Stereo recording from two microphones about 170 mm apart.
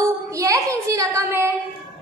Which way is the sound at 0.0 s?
20° right (ahead or behind).